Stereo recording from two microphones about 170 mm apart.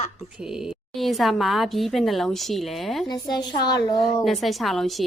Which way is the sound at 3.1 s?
25° left (ahead or behind).